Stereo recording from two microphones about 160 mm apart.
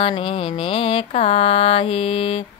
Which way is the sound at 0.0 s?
35° left (ahead or behind).